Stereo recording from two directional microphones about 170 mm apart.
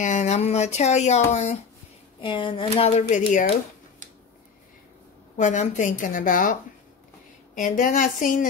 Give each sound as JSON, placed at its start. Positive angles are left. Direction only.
{"t": 0.0, "sound": "speech", "side_deg": 45}
{"t": 2.2, "sound": "speech", "side_deg": 30}
{"t": 5.4, "sound": "a woman's voice", "side_deg": 45}